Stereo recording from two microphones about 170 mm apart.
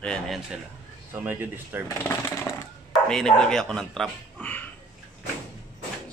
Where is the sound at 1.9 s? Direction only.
15° left (ahead or behind).